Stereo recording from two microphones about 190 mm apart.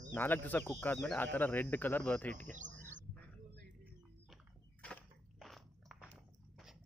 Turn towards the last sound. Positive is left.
turn(degrees=0)  # may be behind; listen again after turning